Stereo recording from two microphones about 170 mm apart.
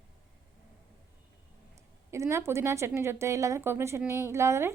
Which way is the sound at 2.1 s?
15° right (ahead or behind).